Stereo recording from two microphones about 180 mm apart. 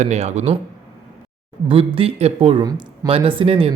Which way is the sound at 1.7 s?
30° right (ahead or behind).